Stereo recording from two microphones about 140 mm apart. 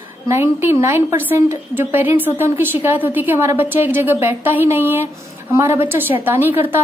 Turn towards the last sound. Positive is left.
turn(degrees=-15)  # may be behind; listen again after turning